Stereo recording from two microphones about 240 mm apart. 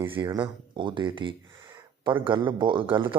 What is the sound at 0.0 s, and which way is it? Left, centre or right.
Speech, centre.